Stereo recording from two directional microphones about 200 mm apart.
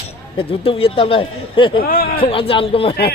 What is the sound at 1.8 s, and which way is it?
Speech, 50° left (ahead or behind).